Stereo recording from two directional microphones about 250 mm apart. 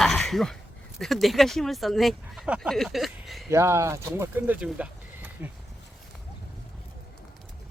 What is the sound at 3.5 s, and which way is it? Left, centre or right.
Speech, centre.